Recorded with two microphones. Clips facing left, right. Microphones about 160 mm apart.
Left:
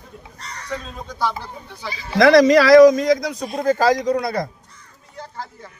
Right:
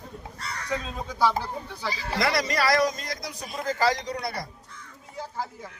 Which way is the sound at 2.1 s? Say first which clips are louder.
Left 15 dB; 90° left.